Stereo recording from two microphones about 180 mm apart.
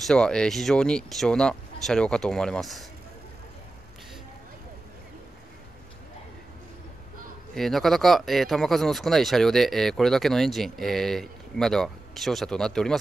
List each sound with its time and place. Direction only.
0.0 s speech: 5° left (ahead or behind)
7.5 s speech: centre (ahead or behind)